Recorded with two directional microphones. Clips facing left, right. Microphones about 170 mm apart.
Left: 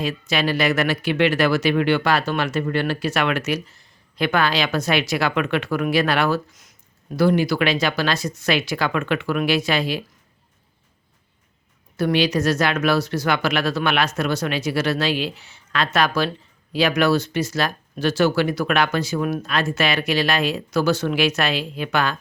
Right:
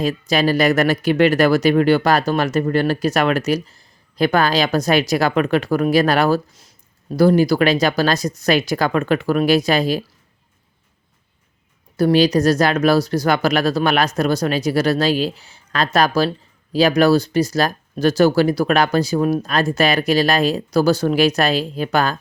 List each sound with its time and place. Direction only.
0.0 s speech: 40° right (ahead or behind)
11.9 s speech: 35° right (ahead or behind)